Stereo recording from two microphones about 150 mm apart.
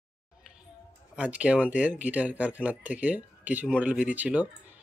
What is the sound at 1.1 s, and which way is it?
Speech, 10° right (ahead or behind).